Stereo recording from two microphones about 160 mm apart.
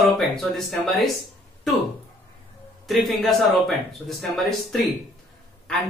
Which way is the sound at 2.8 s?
Centre (ahead or behind).